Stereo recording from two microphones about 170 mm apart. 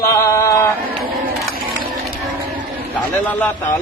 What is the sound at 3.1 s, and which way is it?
Speech, 10° left (ahead or behind).